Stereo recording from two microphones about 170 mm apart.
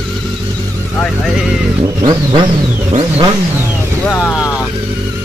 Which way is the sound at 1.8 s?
25° right (ahead or behind).